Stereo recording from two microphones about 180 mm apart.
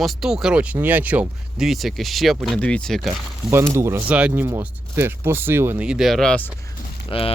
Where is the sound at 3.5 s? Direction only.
15° right (ahead or behind); by 6.5 s 5° left (ahead or behind).